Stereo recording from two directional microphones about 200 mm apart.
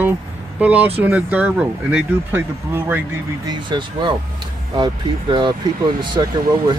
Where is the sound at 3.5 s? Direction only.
25° right (ahead or behind).